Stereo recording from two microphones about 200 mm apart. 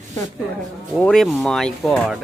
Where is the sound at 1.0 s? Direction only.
Centre (ahead or behind).